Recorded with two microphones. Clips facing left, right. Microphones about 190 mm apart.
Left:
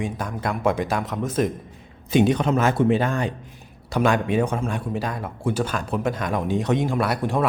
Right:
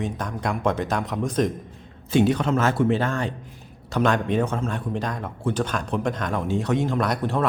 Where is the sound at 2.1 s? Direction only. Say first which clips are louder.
Left 1 dB; 20° left (ahead or behind).